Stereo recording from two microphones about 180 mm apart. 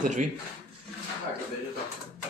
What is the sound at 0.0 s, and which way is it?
Speech, 45° right (ahead or behind).